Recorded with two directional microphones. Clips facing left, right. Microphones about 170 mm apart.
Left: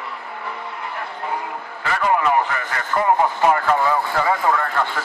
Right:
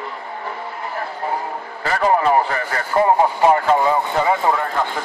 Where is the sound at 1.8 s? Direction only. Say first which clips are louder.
Right 3 dB; 35° right (ahead or behind).